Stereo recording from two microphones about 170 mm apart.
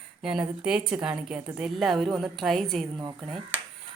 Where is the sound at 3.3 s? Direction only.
10° right (ahead or behind).